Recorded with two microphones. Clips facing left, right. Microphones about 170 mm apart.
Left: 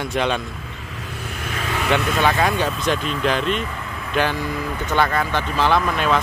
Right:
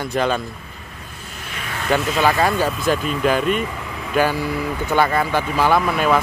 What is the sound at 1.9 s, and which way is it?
Speech, 5° right (ahead or behind).